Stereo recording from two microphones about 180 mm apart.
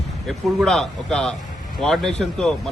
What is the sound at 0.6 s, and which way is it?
A man's voice, 5° left (ahead or behind).